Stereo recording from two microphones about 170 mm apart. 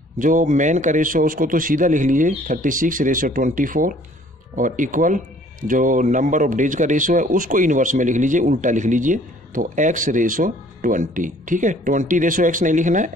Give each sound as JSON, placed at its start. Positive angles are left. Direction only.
{"t": 0.2, "sound": "a man's voice", "side_deg": -50}